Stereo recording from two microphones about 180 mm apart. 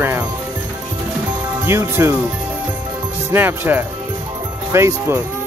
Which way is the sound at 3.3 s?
10° right (ahead or behind).